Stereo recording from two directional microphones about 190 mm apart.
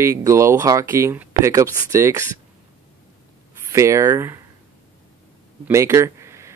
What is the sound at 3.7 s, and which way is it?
Speech, 15° right (ahead or behind).